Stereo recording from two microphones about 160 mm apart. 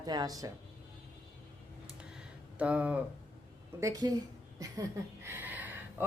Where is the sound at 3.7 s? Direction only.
20° right (ahead or behind).